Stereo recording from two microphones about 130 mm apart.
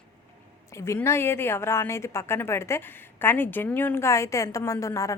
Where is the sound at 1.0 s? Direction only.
20° left (ahead or behind).